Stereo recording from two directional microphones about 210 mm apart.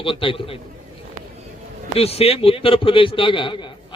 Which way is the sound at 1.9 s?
30° left (ahead or behind).